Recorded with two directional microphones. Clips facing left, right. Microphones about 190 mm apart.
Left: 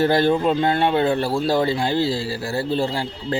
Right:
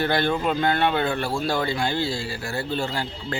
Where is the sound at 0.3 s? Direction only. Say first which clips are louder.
Left 4 dB; 25° left (ahead or behind).